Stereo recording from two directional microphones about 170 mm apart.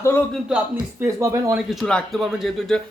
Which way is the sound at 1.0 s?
15° right (ahead or behind).